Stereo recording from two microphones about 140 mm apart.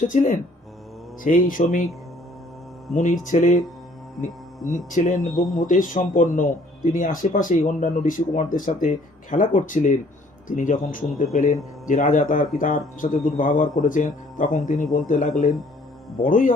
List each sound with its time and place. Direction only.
0.1 s speech: 65° left (ahead or behind)
2.9 s hum: 65° left (ahead or behind)
4.2 s speech: 65° left (ahead or behind)
5.2 s speech: centre (ahead or behind)
5.5 s speech: 65° left (ahead or behind)
11.3 s hum: 65° left (ahead or behind)
11.9 s speech: 70° left (ahead or behind)